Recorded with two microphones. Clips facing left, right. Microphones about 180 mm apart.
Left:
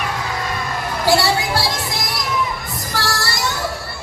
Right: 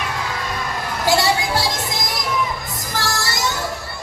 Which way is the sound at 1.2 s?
20° right (ahead or behind).